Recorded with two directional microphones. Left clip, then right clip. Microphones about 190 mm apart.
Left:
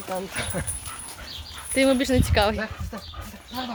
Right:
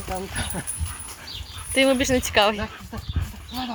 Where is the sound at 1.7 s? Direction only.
15° left (ahead or behind).